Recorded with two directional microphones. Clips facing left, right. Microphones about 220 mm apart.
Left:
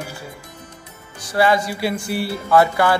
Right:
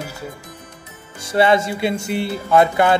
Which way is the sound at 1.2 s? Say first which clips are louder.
Right 2 dB; 25° right (ahead or behind).